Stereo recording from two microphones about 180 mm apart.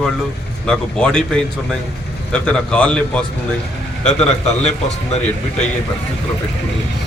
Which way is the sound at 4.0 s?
35° left (ahead or behind).